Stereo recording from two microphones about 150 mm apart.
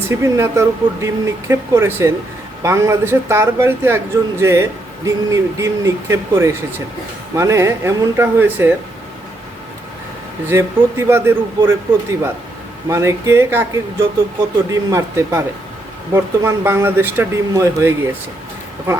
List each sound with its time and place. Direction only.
0.1 s speech: 20° right (ahead or behind)
10.5 s speech: 15° right (ahead or behind)
12.9 s speech: 20° right (ahead or behind)